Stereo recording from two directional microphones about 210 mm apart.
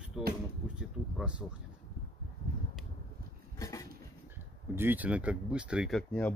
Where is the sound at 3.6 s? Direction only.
15° left (ahead or behind).